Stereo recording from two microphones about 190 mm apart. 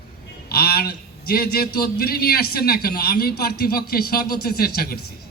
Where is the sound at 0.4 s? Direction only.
55° left (ahead or behind).